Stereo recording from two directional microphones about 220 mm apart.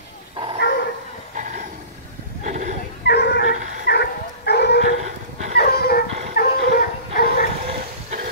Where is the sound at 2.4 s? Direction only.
35° right (ahead or behind).